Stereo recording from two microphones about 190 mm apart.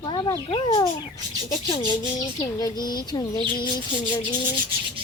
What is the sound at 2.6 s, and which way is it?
Speech, 20° left (ahead or behind).